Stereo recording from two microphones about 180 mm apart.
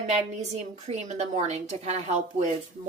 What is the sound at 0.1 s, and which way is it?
A woman's voice, 40° right (ahead or behind).